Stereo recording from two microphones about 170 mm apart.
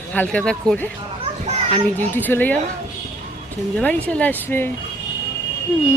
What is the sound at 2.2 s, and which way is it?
Speech, 10° left (ahead or behind).